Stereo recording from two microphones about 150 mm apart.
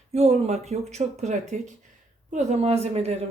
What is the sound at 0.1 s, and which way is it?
A woman's voice, 45° right (ahead or behind).